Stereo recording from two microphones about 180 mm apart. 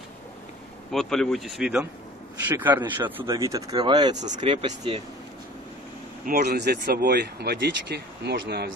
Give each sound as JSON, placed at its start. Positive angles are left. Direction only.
{"t": 0.9, "sound": "a man's voice", "side_deg": 0}
{"t": 6.2, "sound": "speech", "side_deg": -60}